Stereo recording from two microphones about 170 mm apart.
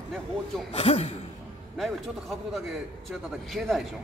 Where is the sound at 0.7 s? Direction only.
40° left (ahead or behind).